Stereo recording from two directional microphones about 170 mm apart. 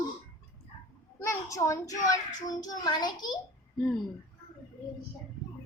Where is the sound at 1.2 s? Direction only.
15° left (ahead or behind).